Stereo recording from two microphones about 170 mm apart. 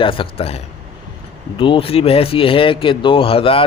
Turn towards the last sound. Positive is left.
turn(degrees=35)  # may be behind; listen again after turning